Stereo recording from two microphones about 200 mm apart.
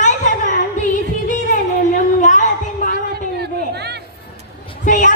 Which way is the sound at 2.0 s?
40° left (ahead or behind).